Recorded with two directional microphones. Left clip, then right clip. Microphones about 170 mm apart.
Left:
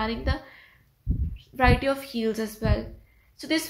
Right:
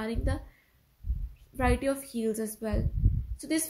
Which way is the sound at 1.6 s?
45° right (ahead or behind).